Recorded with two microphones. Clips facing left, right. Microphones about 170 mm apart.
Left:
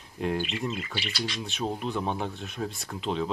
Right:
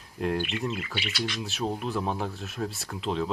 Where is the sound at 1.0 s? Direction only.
40° left (ahead or behind).